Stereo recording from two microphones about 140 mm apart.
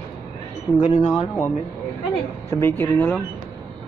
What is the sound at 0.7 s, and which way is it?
Speech, 5° left (ahead or behind).